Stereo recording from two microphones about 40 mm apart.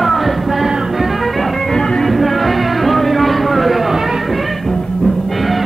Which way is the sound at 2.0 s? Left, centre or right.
Centre.